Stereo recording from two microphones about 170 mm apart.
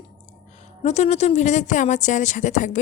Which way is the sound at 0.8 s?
40° left (ahead or behind).